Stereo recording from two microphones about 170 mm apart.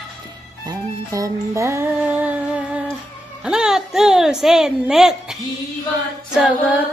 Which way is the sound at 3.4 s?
5° right (ahead or behind).